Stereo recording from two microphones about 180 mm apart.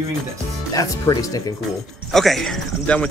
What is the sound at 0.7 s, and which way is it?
Speech, 20° left (ahead or behind).